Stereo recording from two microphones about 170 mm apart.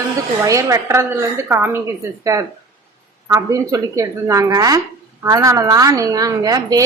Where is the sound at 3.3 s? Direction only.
20° right (ahead or behind).